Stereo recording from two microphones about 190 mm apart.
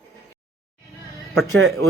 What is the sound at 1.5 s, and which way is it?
Speech, 85° right.